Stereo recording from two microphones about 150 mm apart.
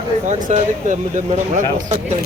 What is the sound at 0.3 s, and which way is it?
Speech, 55° right (ahead or behind).